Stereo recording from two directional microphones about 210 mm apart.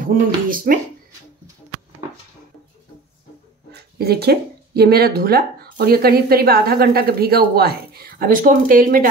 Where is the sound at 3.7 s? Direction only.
50° right (ahead or behind).